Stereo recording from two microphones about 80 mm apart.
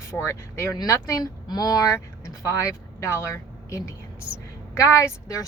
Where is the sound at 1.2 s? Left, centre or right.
Left.